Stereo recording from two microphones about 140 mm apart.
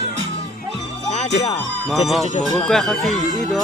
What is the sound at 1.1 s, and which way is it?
Speech, 55° left (ahead or behind).